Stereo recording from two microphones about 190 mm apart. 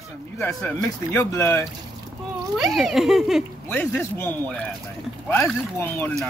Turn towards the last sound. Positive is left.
turn(degrees=10)  # may be behind; listen again after turning